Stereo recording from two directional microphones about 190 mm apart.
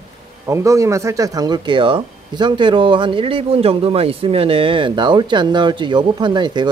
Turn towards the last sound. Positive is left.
turn(degrees=-25)  # may be behind; listen again after turning